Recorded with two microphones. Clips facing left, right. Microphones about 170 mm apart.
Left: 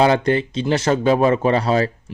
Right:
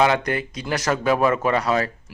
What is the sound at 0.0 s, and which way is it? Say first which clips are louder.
Speech: left 4 dB; 30° left (ahead or behind).